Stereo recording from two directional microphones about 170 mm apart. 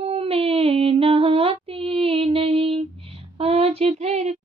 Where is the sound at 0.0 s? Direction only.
35° right (ahead or behind).